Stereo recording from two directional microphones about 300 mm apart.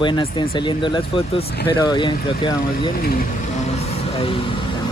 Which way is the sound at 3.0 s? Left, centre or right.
Left.